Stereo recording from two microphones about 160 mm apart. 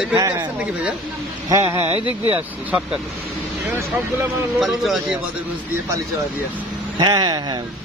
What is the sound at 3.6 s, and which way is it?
A man's voice, 10° right (ahead or behind).